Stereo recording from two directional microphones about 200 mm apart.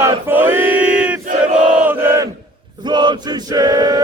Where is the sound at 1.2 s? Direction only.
40° right (ahead or behind).